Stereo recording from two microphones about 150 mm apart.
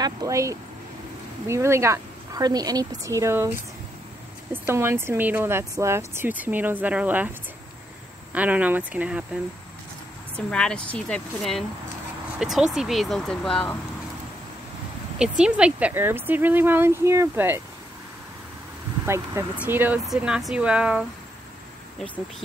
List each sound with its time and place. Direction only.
0.0 s a woman's voice: 25° right (ahead or behind)
8.3 s speech: 10° right (ahead or behind)
10.3 s a woman's voice: 5° left (ahead or behind)
15.1 s speech: 5° right (ahead or behind)
19.0 s speech: 20° right (ahead or behind)
21.9 s speech: 10° left (ahead or behind)